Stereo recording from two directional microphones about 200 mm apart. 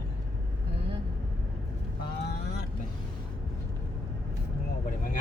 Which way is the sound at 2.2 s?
55° left (ahead or behind).